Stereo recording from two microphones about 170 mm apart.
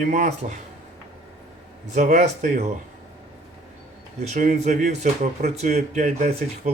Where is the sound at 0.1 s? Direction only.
45° right (ahead or behind).